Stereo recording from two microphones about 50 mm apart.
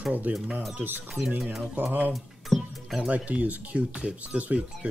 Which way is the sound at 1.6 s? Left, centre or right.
Right.